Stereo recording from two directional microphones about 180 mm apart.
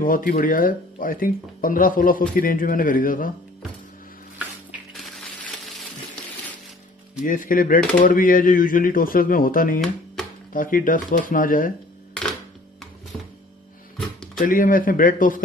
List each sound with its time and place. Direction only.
0.0 s speech: 50° left (ahead or behind)
4.9 s a sound: centre (ahead or behind)
7.2 s speech: 50° left (ahead or behind)
13.9 s music: 5° left (ahead or behind)
14.4 s speech: 50° left (ahead or behind)